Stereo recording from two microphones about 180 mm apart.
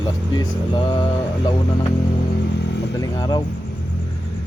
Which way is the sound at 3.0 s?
20° left (ahead or behind).